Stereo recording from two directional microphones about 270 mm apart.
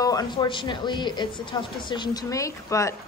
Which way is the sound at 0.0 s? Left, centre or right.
Centre.